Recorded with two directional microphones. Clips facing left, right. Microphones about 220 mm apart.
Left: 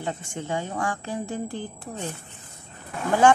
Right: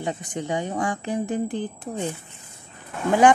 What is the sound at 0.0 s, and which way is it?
Speech, 15° right (ahead or behind).